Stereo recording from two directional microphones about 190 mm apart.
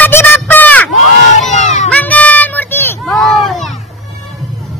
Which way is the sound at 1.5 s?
40° left (ahead or behind).